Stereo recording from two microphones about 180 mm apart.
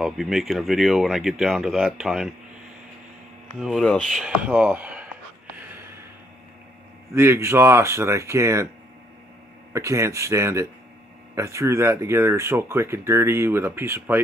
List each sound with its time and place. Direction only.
0.0 s speech: centre (ahead or behind)
3.6 s speech: centre (ahead or behind)
7.2 s speech: 15° right (ahead or behind)
9.7 s speech: 15° right (ahead or behind)